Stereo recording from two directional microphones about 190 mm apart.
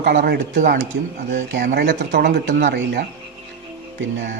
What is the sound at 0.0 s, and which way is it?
Speech, 55° right (ahead or behind).